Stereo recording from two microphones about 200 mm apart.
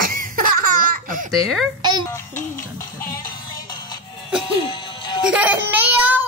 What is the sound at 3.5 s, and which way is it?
Music, 20° left (ahead or behind).